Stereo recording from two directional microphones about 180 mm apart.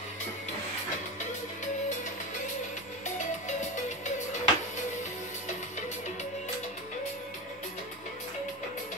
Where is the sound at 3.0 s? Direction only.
40° left (ahead or behind).